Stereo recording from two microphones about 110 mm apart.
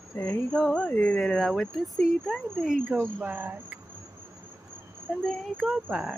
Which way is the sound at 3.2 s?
15° right (ahead or behind).